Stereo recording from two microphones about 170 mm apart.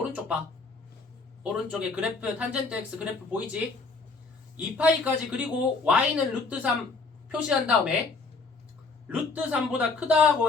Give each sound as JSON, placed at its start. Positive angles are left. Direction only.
{"t": 1.5, "sound": "a woman's voice", "side_deg": -5}
{"t": 9.0, "sound": "speech", "side_deg": -10}